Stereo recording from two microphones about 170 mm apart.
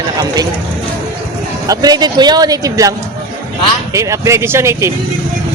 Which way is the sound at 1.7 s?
20° right (ahead or behind).